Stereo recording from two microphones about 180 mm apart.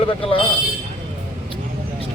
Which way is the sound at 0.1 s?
30° left (ahead or behind).